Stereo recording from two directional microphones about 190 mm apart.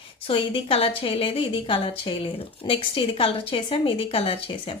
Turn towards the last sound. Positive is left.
turn(degrees=30)  # may be behind; listen again after turning